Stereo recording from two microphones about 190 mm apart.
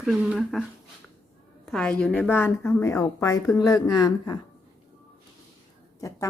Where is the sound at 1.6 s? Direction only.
5° left (ahead or behind); by 4.4 s 20° left (ahead or behind).